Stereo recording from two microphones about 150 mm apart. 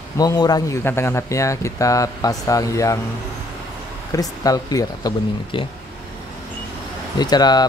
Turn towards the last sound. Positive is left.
turn(degrees=25)  # may be behind; listen again after turning